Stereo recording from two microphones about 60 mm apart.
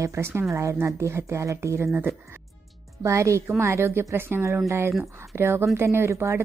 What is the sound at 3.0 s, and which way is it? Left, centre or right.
A woman's voice, right.